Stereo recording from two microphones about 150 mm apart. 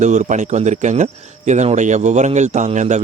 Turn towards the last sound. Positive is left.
turn(degrees=-50)  # may be behind; listen again after turning